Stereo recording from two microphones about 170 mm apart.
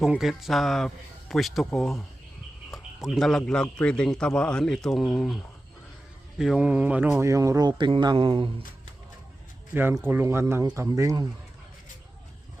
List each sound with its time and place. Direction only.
0.0 s a man's voice: centre (ahead or behind)
6.4 s speech: 5° right (ahead or behind); by 8.6 s 30° right (ahead or behind)
9.7 s speech: 10° right (ahead or behind)